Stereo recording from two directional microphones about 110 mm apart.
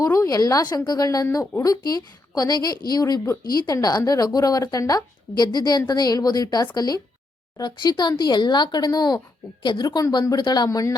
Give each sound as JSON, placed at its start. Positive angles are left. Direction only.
{"t": 0.0, "sound": "a woman's voice", "side_deg": 30}
{"t": 10.7, "sound": "speech", "side_deg": 30}